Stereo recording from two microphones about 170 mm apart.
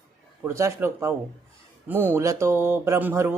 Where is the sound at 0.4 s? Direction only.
15° right (ahead or behind).